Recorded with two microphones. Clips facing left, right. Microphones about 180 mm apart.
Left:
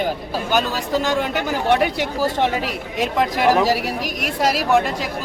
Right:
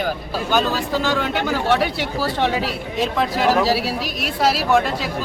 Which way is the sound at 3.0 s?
15° left (ahead or behind).